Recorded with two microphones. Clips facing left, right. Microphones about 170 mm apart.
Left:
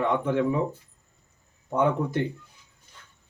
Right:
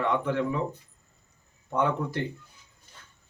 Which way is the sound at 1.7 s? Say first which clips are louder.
Left 3 dB; 15° left (ahead or behind).